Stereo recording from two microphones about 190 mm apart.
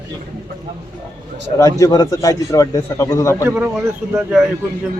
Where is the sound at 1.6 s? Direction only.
20° left (ahead or behind).